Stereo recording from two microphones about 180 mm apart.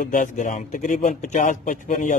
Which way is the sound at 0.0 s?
45° left (ahead or behind).